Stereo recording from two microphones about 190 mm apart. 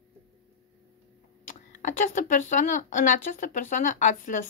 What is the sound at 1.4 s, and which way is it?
Speech, 45° left (ahead or behind).